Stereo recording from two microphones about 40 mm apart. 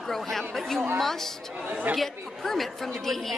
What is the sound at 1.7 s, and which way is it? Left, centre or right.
Speech, right.